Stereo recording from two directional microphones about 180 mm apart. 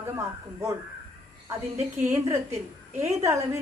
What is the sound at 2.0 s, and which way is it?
A woman's voice, 15° right (ahead or behind).